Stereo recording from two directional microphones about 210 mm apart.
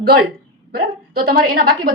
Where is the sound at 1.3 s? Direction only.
45° right (ahead or behind).